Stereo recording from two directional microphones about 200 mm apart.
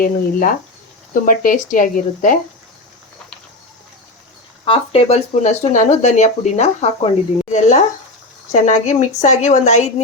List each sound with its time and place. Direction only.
0.0 s speech: 45° left (ahead or behind)
4.6 s speech: 30° left (ahead or behind)